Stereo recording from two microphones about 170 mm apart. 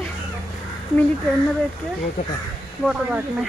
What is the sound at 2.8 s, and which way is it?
Speech, 5° right (ahead or behind).